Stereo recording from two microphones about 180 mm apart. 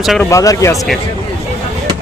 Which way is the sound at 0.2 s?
15° left (ahead or behind).